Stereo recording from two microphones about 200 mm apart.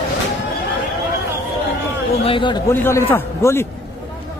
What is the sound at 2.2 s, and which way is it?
Speech, 25° left (ahead or behind).